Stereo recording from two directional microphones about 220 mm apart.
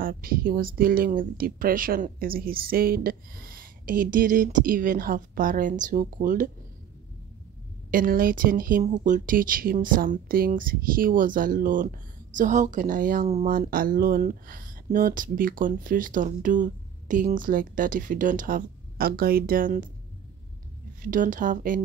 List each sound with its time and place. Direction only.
0.0 s speech: 40° right (ahead or behind)
7.9 s speech: 40° right (ahead or behind)
21.0 s speech: 35° right (ahead or behind)